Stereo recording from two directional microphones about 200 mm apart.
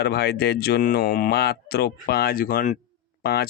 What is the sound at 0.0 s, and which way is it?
Speech, 55° left (ahead or behind).